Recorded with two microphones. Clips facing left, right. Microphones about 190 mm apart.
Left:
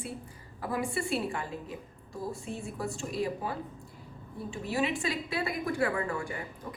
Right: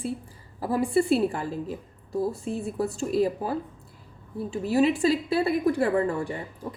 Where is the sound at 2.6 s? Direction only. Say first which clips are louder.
Right 8 dB; 40° right (ahead or behind).